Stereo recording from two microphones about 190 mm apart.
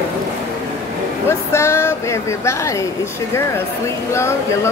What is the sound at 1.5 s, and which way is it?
Speech, 15° left (ahead or behind).